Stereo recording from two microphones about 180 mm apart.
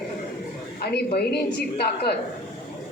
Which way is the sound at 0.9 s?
60° left (ahead or behind).